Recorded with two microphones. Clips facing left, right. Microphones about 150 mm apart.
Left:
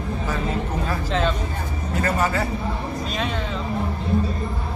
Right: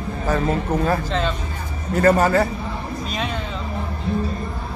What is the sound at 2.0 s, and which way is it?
Speech, 45° right (ahead or behind).